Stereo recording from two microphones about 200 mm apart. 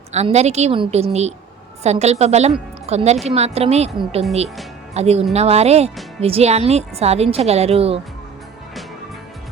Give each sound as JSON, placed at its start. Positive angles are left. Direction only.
{"t": 0.1, "sound": "a woman's voice", "side_deg": -35}